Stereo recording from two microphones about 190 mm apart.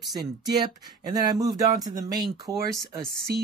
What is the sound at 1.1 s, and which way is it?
Speech, 20° right (ahead or behind).